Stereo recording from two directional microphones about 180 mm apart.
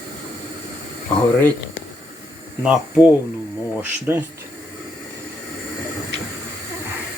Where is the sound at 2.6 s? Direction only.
5° right (ahead or behind).